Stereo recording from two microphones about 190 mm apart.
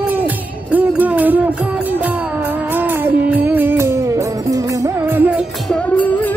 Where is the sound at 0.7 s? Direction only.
10° right (ahead or behind).